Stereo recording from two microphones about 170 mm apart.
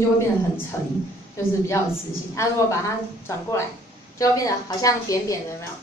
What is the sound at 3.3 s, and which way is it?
A woman's voice, 20° left (ahead or behind).